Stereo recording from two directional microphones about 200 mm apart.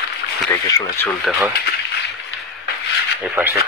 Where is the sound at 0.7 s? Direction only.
15° left (ahead or behind).